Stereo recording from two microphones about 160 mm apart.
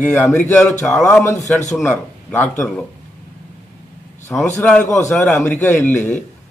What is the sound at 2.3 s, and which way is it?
Speech, 10° left (ahead or behind).